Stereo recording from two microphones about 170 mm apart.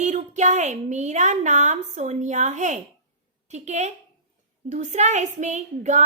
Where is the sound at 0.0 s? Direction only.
45° right (ahead or behind).